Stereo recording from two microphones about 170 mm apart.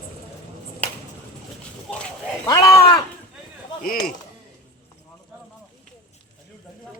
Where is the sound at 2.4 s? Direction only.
20° left (ahead or behind).